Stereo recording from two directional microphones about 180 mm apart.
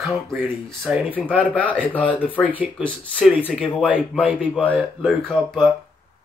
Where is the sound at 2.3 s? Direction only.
10° right (ahead or behind).